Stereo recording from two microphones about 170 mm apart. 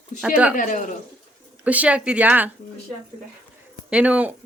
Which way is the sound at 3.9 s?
5° right (ahead or behind).